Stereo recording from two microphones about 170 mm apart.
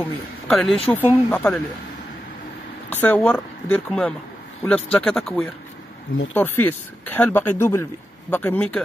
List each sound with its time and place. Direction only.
0.0 s speech: 5° left (ahead or behind)
2.9 s speech: 10° left (ahead or behind)